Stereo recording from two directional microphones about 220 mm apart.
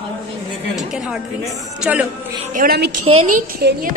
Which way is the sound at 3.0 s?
30° right (ahead or behind).